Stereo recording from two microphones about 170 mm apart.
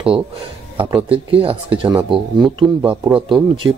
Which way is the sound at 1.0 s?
35° right (ahead or behind).